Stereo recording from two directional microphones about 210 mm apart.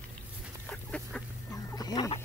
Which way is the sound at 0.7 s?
5° left (ahead or behind).